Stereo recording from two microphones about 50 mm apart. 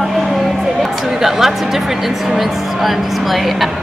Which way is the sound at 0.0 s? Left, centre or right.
Centre.